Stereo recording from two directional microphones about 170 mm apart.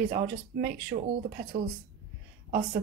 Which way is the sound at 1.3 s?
55° right (ahead or behind).